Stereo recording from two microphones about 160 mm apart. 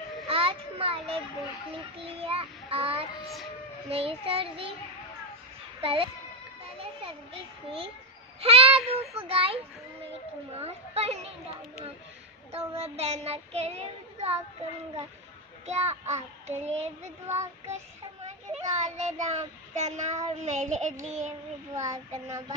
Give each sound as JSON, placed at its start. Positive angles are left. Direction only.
{"t": 0.3, "sound": "a sound", "side_deg": -35}
{"t": 1.7, "sound": "child singing", "side_deg": -35}
{"t": 5.8, "sound": "a child's voice", "side_deg": -35}
{"t": 8.4, "sound": "child singing", "side_deg": -35}
{"t": 10.6, "sound": "child singing", "side_deg": -40}
{"t": 15.6, "sound": "speech", "side_deg": -45}
{"t": 21.7, "sound": "child singing", "side_deg": -20}